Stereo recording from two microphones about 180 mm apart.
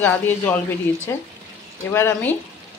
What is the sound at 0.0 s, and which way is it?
A man's voice, 10° left (ahead or behind).